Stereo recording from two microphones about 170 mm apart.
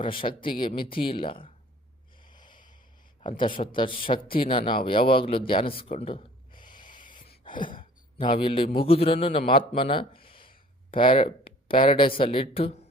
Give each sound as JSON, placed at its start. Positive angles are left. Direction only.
{"t": 0.0, "sound": "speech", "side_deg": 30}
{"t": 2.2, "sound": "snort", "side_deg": 25}
{"t": 3.6, "sound": "a man's voice", "side_deg": 30}
{"t": 6.7, "sound": "a sound", "side_deg": 30}
{"t": 7.8, "sound": "a man's voice", "side_deg": 30}